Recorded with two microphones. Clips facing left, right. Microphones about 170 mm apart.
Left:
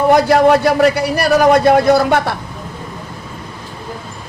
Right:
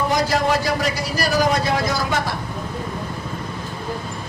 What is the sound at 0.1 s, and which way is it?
Speech, 60° left (ahead or behind).